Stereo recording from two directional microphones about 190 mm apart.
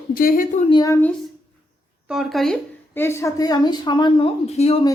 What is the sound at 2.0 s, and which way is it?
A woman's voice, centre (ahead or behind).